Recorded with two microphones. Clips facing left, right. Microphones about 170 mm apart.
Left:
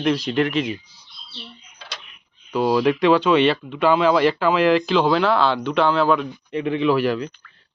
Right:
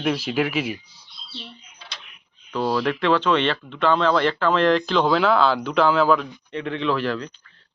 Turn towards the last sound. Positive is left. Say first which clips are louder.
# left 4 dB
turn(degrees=10)  # may be behind; listen again after turning